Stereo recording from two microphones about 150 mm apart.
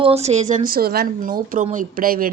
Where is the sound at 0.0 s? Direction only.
45° right (ahead or behind).